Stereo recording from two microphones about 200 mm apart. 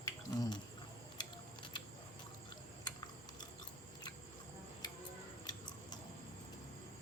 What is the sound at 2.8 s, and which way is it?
Typing, 20° left (ahead or behind).